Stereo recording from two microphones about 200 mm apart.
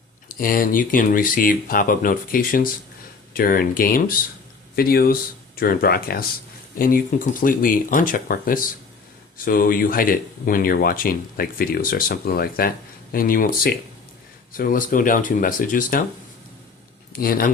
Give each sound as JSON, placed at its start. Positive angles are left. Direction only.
{"t": 0.3, "sound": "speech", "side_deg": 45}
{"t": 17.1, "sound": "speech", "side_deg": 45}